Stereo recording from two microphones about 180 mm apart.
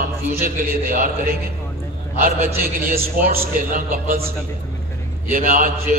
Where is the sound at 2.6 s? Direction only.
55° right (ahead or behind).